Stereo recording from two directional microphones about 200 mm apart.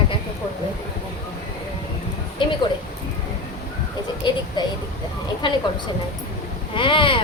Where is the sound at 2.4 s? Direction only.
25° left (ahead or behind).